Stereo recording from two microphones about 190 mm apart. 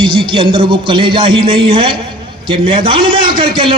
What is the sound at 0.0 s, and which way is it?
A man's voice, 25° right (ahead or behind).